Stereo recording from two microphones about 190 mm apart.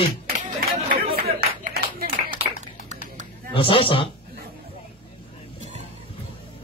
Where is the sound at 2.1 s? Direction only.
30° right (ahead or behind).